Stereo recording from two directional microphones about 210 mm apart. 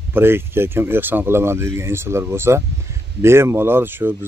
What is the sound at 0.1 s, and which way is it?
Speech, 10° right (ahead or behind).